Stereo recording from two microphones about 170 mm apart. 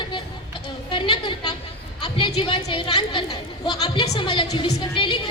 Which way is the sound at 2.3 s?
30° left (ahead or behind).